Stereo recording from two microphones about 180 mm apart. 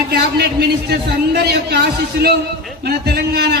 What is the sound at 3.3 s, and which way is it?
Speech, 65° right (ahead or behind).